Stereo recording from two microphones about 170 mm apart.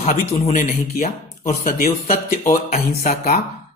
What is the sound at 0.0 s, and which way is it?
Speech, 40° left (ahead or behind).